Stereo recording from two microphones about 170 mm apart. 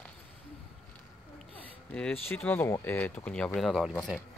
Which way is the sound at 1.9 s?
10° left (ahead or behind).